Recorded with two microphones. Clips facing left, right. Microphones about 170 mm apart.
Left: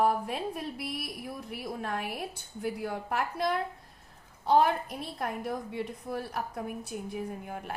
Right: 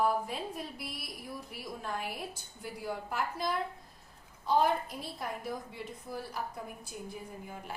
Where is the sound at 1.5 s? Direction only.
65° left (ahead or behind).